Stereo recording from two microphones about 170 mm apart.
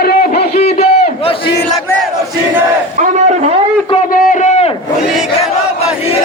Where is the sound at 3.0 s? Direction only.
45° right (ahead or behind).